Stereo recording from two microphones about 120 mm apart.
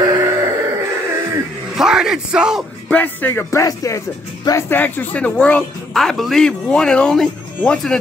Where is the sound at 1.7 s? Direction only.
5° right (ahead or behind).